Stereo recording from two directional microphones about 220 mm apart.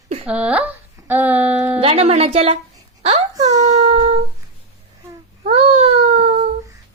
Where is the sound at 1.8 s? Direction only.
25° right (ahead or behind).